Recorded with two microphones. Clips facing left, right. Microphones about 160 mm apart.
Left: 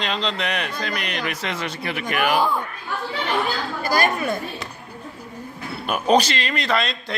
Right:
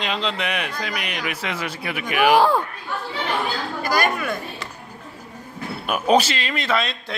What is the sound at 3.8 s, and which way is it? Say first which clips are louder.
Speech: left 1 dB; 30° left (ahead or behind).